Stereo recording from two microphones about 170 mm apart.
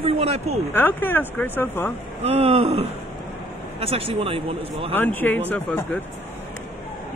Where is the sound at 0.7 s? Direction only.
10° left (ahead or behind).